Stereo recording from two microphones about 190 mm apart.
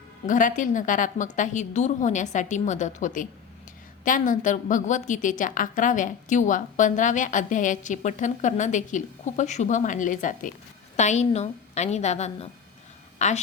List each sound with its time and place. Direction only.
0.3 s a woman's voice: 45° left (ahead or behind)